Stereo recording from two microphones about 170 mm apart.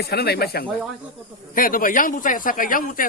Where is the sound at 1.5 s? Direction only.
55° left (ahead or behind).